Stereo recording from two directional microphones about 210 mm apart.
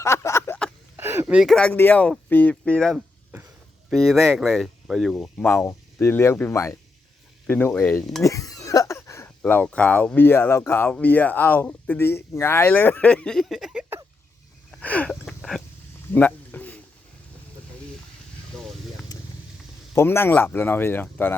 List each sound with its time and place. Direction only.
0.0 s a sound: 15° left (ahead or behind)
0.9 s speech: 10° right (ahead or behind); by 8.2 s 5° left (ahead or behind)
8.2 s speech: 15° left (ahead or behind); by 14.0 s 5° right (ahead or behind)
14.7 s a sound: 5° left (ahead or behind)
19.1 s vehicle: 20° left (ahead or behind)
20.0 s speech: 10° left (ahead or behind)